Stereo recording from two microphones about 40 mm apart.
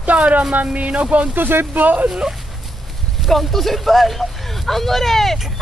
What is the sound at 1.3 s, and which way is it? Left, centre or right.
Speech, right.